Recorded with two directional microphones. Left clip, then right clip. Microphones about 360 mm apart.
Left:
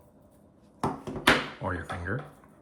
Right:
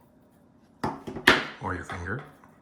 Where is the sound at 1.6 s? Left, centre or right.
Centre.